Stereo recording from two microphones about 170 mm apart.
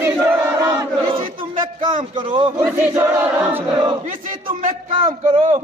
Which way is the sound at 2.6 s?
15° right (ahead or behind).